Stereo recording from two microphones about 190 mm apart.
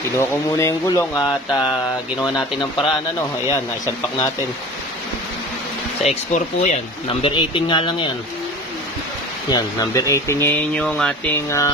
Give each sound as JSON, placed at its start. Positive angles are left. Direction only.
{"t": 0.2, "sound": "speech", "side_deg": 15}
{"t": 6.0, "sound": "speech", "side_deg": 40}
{"t": 7.1, "sound": "speech", "side_deg": 25}
{"t": 9.5, "sound": "speech", "side_deg": 20}